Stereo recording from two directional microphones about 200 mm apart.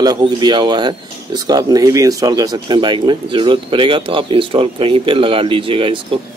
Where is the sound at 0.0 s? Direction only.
20° right (ahead or behind).